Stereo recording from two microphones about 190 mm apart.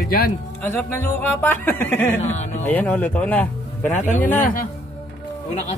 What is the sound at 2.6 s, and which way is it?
Speech, 10° left (ahead or behind).